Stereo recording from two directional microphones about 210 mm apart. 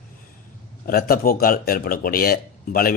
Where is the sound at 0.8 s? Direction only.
45° left (ahead or behind).